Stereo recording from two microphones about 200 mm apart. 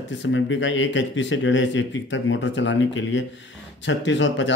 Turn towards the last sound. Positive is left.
turn(degrees=65)  # may be behind; listen again after turning